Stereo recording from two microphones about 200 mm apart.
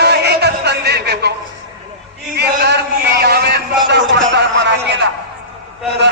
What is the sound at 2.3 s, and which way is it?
Chant, 55° right (ahead or behind).